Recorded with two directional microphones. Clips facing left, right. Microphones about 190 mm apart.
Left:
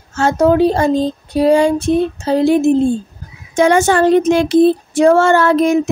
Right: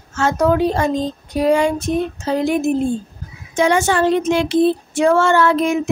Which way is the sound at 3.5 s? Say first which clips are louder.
Left 4 dB; 45° left (ahead or behind).